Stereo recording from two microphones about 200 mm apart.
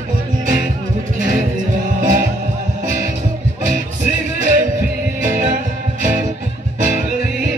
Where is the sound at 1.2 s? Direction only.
40° right (ahead or behind).